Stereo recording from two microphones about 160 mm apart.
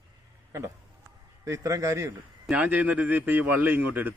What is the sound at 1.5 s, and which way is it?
A man's voice, 20° right (ahead or behind).